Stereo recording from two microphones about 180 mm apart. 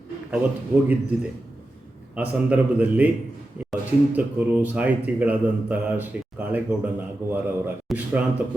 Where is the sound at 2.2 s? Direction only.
10° right (ahead or behind).